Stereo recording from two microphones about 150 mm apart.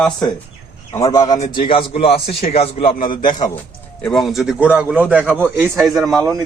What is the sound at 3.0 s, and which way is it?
Speech, 65° left (ahead or behind).